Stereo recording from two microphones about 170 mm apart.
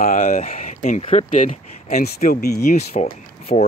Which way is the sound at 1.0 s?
45° left (ahead or behind).